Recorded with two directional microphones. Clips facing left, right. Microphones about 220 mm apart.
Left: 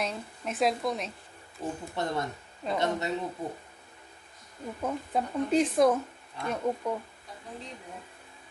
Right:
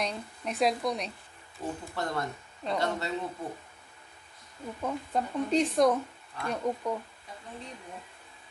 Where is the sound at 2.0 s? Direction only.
20° left (ahead or behind).